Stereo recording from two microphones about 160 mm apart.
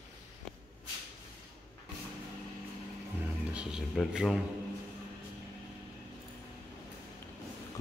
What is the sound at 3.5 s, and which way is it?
Speech, centre (ahead or behind).